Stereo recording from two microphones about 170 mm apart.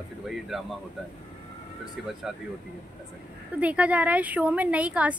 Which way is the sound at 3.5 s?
10° right (ahead or behind).